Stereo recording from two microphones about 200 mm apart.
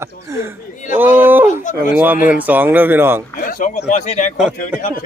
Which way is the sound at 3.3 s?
45° left (ahead or behind).